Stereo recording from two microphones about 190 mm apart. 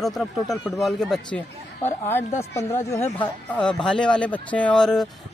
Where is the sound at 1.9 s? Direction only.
10° left (ahead or behind).